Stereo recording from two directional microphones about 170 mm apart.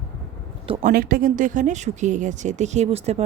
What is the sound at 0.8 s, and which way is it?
A woman's voice, 60° right (ahead or behind).